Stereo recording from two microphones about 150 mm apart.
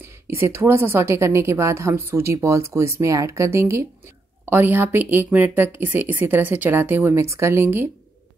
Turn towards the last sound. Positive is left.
turn(degrees=-15)  # may be behind; listen again after turning